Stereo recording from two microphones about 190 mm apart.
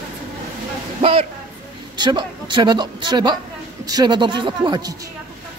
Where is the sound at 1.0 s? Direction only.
30° right (ahead or behind).